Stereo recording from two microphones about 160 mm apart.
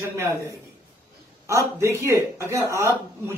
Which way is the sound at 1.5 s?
15° right (ahead or behind).